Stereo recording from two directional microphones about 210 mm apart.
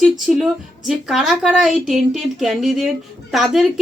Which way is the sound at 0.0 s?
Centre (ahead or behind).